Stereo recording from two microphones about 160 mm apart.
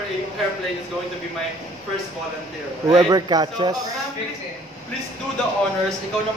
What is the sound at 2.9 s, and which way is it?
Speech, 25° right (ahead or behind).